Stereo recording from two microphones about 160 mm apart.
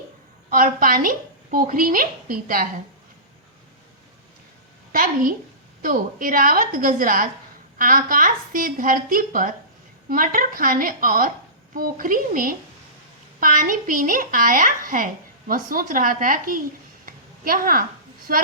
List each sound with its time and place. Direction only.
0.5 s a woman's voice: 60° right (ahead or behind)
4.9 s a woman's voice: 60° right (ahead or behind)
17.1 s a sound: 60° right (ahead or behind)
18.3 s a woman's voice: 60° right (ahead or behind)